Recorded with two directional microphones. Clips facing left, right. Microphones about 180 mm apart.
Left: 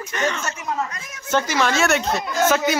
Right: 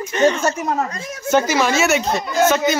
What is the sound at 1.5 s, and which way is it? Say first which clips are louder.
Speech: right 3 dB; 5° right (ahead or behind).